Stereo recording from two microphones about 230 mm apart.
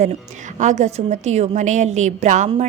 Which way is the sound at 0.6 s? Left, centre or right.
Right.